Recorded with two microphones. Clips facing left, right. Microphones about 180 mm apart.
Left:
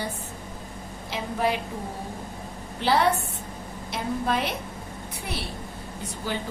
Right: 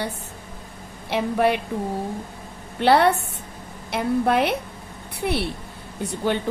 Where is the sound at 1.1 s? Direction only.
65° right (ahead or behind).